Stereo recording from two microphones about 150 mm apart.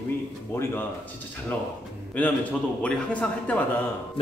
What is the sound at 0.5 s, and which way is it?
Speech, 15° left (ahead or behind).